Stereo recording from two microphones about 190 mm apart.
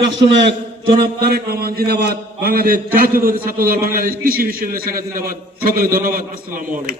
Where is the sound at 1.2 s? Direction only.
55° right (ahead or behind).